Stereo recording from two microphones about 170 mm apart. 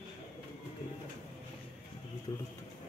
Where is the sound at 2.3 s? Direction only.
25° left (ahead or behind).